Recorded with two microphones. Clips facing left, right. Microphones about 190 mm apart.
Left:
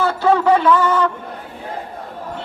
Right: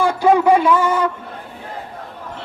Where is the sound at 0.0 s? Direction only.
15° right (ahead or behind).